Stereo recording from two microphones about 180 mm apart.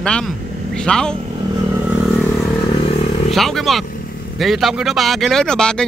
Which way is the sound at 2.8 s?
35° left (ahead or behind).